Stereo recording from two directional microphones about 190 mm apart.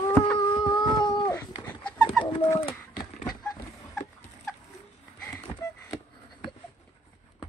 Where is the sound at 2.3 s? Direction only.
25° left (ahead or behind).